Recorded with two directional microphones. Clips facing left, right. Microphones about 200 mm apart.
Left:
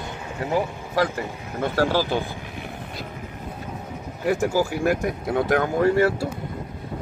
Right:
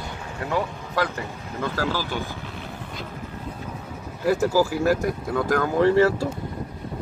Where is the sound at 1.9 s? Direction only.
45° left (ahead or behind).